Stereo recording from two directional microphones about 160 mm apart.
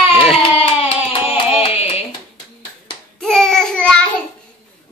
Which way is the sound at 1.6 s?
40° left (ahead or behind).